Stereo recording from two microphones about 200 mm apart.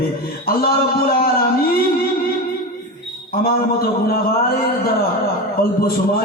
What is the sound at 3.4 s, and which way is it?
Speech, 50° left (ahead or behind).